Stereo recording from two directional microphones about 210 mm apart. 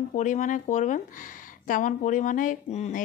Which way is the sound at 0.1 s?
35° left (ahead or behind).